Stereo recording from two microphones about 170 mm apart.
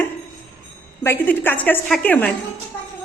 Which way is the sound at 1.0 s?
15° left (ahead or behind).